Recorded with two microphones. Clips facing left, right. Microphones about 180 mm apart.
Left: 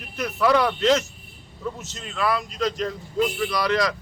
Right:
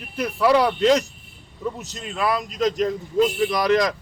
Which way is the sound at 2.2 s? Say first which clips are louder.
Right 1 dB; 15° right (ahead or behind).